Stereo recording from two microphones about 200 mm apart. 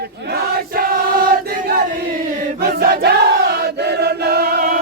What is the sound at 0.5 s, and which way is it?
Choir, 45° right (ahead or behind).